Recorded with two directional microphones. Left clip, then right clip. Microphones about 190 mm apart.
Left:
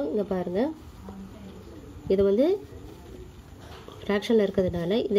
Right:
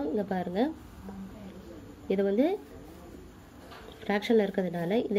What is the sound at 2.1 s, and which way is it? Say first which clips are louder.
Speech: left 5 dB; 50° left (ahead or behind).